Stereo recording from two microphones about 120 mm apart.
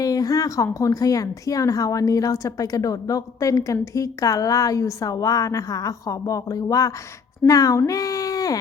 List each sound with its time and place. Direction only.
0.0 s speech: 30° left (ahead or behind)